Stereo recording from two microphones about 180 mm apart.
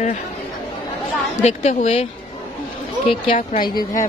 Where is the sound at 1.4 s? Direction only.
35° left (ahead or behind).